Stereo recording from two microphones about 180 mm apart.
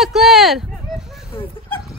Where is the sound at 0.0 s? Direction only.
Centre (ahead or behind).